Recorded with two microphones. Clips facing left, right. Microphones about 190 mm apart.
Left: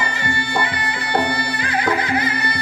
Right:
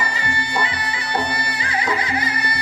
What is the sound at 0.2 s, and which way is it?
Music, 55° left (ahead or behind).